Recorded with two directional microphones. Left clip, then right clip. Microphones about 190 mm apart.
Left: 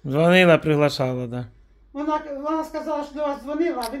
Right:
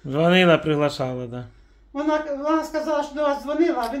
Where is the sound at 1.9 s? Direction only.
20° right (ahead or behind).